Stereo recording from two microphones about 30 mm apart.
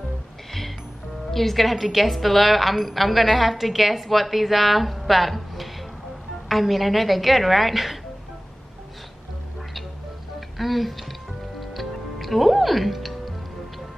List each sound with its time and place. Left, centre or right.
0.5 s music: centre
1.3 s a woman's voice: centre
10.6 s speech: centre
11.7 s music: centre